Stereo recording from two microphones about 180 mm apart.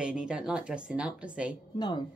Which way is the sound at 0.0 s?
5° right (ahead or behind).